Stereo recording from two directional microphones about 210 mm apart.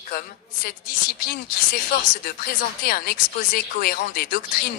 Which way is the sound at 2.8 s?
45° left (ahead or behind).